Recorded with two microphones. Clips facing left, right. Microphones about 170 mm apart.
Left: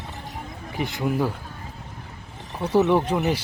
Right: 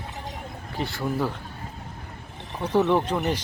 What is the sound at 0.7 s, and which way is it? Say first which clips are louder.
Speech: left 3 dB; 15° left (ahead or behind).